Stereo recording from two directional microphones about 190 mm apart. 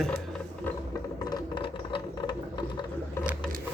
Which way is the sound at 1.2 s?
25° left (ahead or behind).